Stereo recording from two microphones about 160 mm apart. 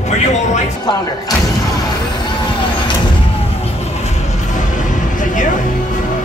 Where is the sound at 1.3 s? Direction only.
20° left (ahead or behind).